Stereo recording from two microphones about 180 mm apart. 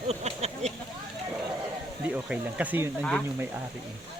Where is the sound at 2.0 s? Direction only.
10° right (ahead or behind).